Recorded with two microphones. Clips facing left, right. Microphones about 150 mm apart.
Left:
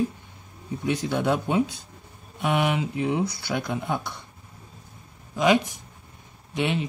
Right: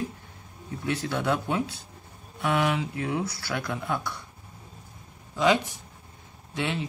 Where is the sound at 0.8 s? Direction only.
15° left (ahead or behind).